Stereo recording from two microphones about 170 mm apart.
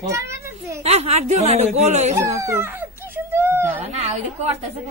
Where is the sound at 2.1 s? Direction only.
20° right (ahead or behind).